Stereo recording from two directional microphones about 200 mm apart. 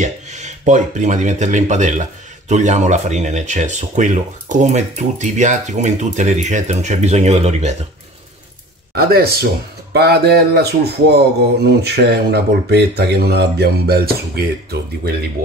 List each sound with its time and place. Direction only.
0.0 s speech: 35° right (ahead or behind)
8.9 s speech: 50° right (ahead or behind)